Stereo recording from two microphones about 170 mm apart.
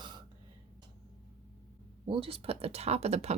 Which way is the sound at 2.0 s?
30° right (ahead or behind).